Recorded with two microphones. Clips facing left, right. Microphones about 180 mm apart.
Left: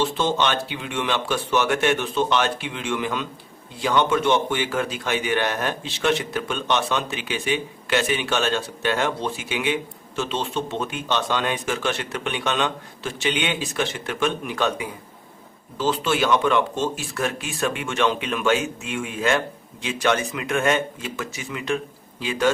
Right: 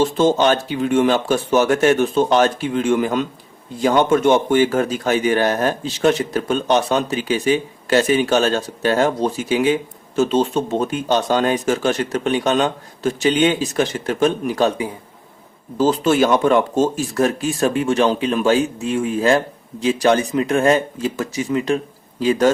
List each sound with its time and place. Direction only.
0.0 s a man's voice: 45° right (ahead or behind)